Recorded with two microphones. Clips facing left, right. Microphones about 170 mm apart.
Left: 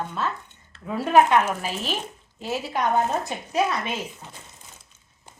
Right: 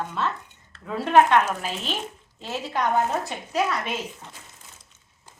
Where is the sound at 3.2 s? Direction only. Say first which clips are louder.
Left 1 dB; 20° left (ahead or behind).